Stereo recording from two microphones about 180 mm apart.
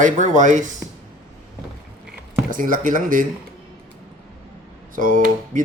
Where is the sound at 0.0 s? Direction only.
45° right (ahead or behind).